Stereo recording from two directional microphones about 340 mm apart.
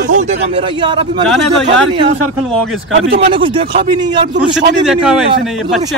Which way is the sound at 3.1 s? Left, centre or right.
Centre.